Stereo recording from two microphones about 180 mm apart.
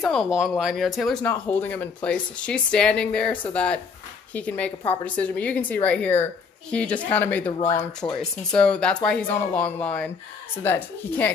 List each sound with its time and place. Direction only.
0.1 s speech: centre (ahead or behind)